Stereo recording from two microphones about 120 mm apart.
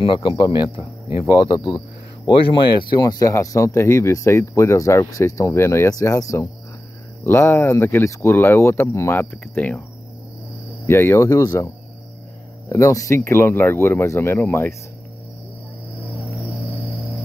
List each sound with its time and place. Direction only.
0.0 s speech: 45° left (ahead or behind)
1.0 s cricket: 20° right (ahead or behind)
1.4 s speech: 40° left (ahead or behind); by 9.8 s 15° left (ahead or behind)
10.9 s speech: 20° left (ahead or behind)